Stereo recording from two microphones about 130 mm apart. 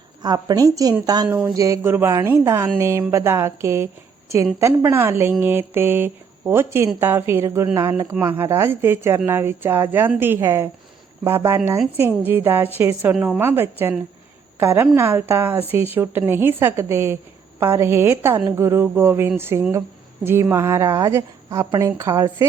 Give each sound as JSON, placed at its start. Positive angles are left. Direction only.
{"t": 0.2, "sound": "speech", "side_deg": -30}